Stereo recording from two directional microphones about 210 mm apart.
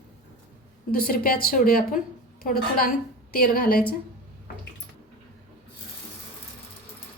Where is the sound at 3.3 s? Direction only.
45° left (ahead or behind).